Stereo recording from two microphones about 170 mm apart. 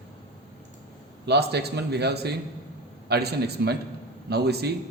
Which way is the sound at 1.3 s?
75° right (ahead or behind).